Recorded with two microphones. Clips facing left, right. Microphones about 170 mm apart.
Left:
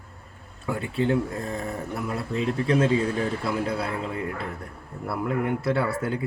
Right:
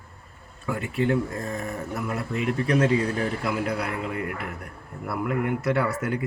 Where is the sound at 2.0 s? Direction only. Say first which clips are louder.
Even; 30° left (ahead or behind).